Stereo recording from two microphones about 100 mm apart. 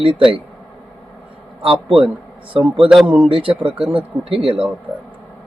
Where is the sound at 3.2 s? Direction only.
60° right (ahead or behind).